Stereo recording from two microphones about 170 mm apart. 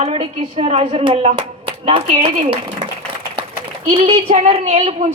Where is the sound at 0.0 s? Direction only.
35° right (ahead or behind).